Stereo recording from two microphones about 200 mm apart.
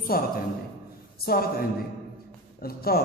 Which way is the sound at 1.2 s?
50° left (ahead or behind).